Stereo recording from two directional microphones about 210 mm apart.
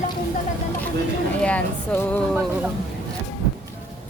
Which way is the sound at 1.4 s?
5° left (ahead or behind).